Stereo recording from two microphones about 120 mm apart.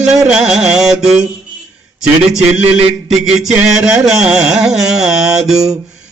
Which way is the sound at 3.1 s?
5° right (ahead or behind).